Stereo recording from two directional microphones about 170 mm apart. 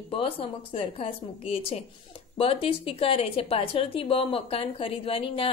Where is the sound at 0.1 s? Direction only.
35° left (ahead or behind).